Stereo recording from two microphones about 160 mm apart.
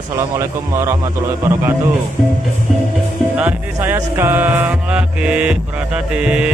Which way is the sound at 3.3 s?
10° right (ahead or behind).